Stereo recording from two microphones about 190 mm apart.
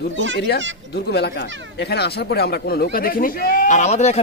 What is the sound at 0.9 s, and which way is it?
Speech, 60° left (ahead or behind).